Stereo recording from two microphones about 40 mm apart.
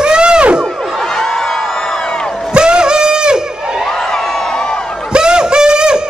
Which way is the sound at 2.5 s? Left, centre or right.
Right.